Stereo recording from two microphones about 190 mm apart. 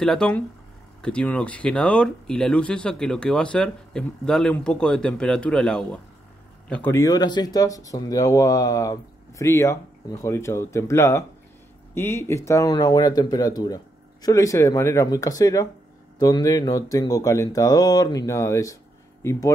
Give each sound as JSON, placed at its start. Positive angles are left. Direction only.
{"t": 0.0, "sound": "speech", "side_deg": 5}